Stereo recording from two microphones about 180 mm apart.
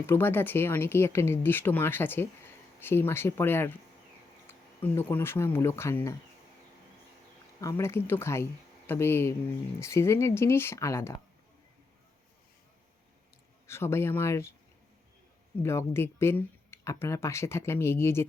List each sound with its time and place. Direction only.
0.1 s speech: 10° left (ahead or behind)
7.6 s speech: 15° left (ahead or behind)
13.7 s speech: 15° left (ahead or behind)
15.6 s speech: 15° left (ahead or behind)